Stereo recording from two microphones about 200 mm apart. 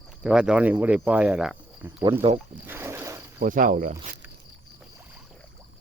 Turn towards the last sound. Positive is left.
turn(degrees=-45)  # may be behind; listen again after turning